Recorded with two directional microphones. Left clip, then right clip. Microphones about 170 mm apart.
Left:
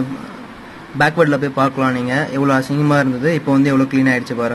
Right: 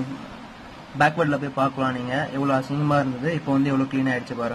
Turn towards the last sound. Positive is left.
turn(degrees=10)  # may be behind; listen again after turning